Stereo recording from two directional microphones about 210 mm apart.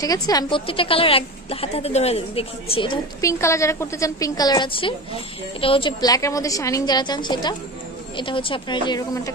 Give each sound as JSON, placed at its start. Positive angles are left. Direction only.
{"t": 0.0, "sound": "a woman's voice", "side_deg": 15}